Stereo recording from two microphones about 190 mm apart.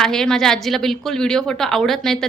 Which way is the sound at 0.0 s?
5° left (ahead or behind).